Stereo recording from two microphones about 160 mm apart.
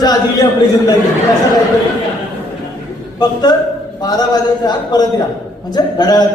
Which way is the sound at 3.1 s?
25° left (ahead or behind).